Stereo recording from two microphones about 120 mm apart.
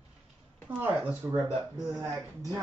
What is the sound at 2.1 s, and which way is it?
Speech, 30° right (ahead or behind).